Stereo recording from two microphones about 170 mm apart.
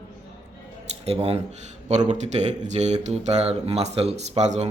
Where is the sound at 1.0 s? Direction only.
35° right (ahead or behind).